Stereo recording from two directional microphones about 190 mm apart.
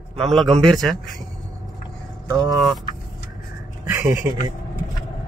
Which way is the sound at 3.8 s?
20° right (ahead or behind).